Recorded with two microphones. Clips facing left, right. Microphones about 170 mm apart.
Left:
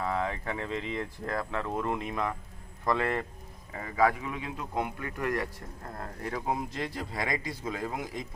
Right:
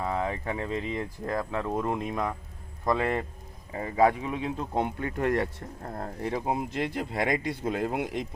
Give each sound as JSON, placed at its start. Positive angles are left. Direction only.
{"t": 0.0, "sound": "speech", "side_deg": -25}
{"t": 7.1, "sound": "speech", "side_deg": -60}